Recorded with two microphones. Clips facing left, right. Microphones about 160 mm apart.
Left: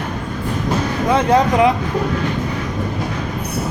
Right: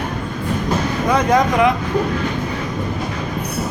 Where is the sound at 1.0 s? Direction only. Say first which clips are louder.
Left 1 dB; 30° left (ahead or behind).